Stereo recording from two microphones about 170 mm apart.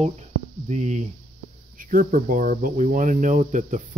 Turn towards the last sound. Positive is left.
turn(degrees=-50)  # may be behind; listen again after turning